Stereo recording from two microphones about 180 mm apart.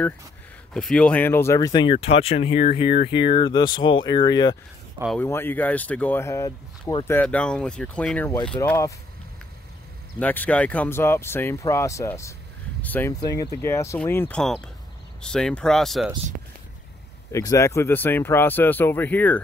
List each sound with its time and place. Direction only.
0.7 s speech: 5° left (ahead or behind); by 4.6 s 25° left (ahead or behind)
5.2 s speech: 10° left (ahead or behind)
7.2 s speech: 5° left (ahead or behind)
8.5 s speech: 15° left (ahead or behind)
10.1 s speech: 10° left (ahead or behind)
13.2 s speech: 20° left (ahead or behind); by 16.1 s centre (ahead or behind)
17.3 s speech: 20° left (ahead or behind)